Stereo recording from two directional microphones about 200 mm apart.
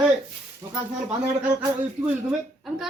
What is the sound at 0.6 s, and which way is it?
Speech, 15° right (ahead or behind).